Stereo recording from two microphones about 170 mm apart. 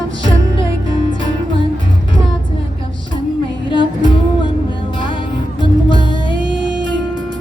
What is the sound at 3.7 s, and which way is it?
Music, 30° left (ahead or behind).